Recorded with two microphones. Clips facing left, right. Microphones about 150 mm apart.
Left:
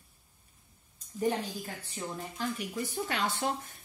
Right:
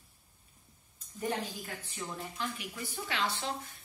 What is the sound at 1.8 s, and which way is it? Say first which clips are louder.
Speech: left 2 dB; 35° left (ahead or behind).